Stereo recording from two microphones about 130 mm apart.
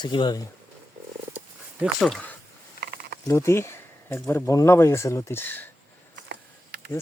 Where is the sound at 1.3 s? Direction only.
10° right (ahead or behind).